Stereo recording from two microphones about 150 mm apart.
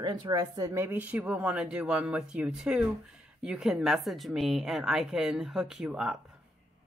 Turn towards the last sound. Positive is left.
turn(degrees=-5)  # may be behind; listen again after turning